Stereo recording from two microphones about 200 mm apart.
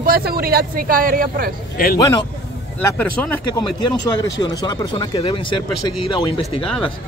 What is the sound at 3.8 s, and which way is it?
Speech, 20° left (ahead or behind).